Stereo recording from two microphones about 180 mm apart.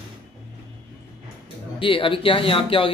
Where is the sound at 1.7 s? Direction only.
30° left (ahead or behind).